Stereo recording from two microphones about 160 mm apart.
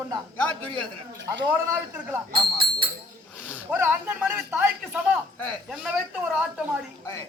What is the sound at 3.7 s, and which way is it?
Speech, 10° right (ahead or behind).